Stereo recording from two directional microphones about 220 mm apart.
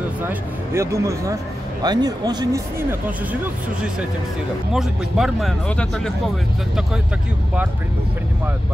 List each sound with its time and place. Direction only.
0.3 s a man's voice: 10° right (ahead or behind)
4.7 s speech: centre (ahead or behind)